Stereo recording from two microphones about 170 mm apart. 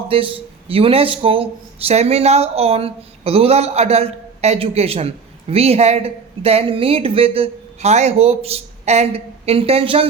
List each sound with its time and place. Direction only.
0.1 s speech: 30° right (ahead or behind)